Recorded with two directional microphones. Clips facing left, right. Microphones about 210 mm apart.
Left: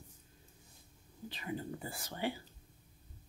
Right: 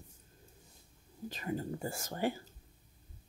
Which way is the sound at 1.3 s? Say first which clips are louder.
Right 3 dB; 45° right (ahead or behind).